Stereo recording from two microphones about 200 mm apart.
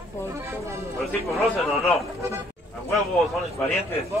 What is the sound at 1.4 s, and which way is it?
Speech, centre (ahead or behind).